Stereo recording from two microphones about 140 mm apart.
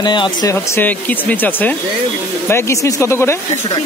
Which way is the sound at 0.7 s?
10° left (ahead or behind).